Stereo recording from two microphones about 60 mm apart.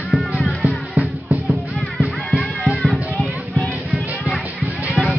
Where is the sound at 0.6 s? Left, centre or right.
Right.